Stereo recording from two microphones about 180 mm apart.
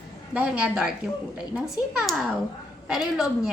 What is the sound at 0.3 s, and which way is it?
A woman's voice, 5° right (ahead or behind).